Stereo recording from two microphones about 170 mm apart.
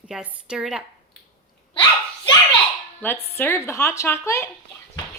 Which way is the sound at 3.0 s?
10° left (ahead or behind).